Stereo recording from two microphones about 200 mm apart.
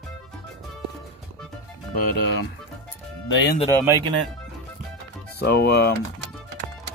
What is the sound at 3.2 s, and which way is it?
Speech, 70° left (ahead or behind).